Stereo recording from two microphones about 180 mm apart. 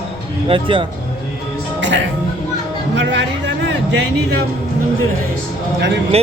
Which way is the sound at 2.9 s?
85° right.